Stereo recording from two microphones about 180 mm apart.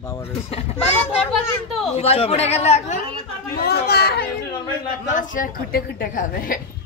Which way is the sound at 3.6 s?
60° left (ahead or behind).